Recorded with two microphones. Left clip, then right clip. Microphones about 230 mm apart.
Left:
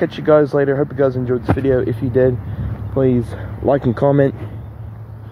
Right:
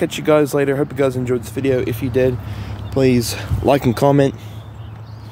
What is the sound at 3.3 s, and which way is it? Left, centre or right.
Speech, right.